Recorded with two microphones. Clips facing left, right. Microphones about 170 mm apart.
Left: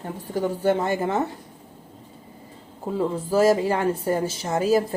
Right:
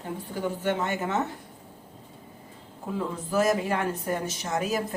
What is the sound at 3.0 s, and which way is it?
Speech, 30° left (ahead or behind).